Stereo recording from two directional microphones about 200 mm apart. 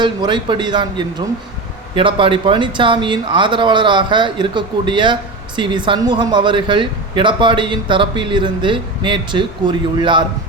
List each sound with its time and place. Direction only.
0.0 s speech: 20° right (ahead or behind)